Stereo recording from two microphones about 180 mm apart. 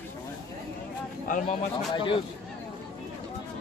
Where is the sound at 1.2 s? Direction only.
45° left (ahead or behind).